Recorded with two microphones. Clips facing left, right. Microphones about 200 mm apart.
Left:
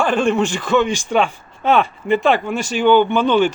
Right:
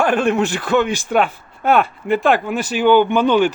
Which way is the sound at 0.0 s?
5° right (ahead or behind).